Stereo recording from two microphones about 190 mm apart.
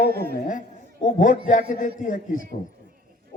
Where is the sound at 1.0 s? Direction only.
45° left (ahead or behind).